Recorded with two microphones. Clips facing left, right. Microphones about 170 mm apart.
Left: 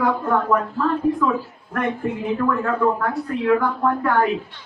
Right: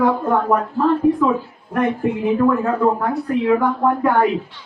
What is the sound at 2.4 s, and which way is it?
A woman's voice, 20° right (ahead or behind).